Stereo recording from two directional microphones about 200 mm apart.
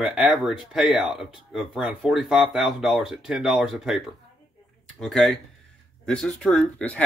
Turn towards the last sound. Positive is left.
turn(degrees=5)  # may be behind; listen again after turning